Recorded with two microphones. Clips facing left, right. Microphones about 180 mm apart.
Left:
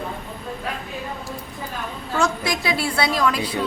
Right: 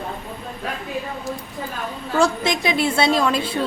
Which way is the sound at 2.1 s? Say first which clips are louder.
Right 3 dB; 30° right (ahead or behind).